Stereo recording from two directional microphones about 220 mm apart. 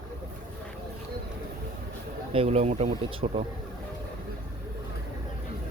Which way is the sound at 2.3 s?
25° right (ahead or behind).